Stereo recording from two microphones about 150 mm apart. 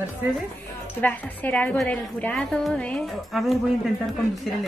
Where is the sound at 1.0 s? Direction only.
10° left (ahead or behind).